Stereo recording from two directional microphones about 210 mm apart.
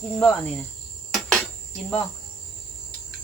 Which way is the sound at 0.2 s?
Centre (ahead or behind).